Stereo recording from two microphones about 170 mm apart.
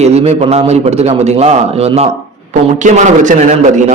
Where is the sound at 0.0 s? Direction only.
40° right (ahead or behind).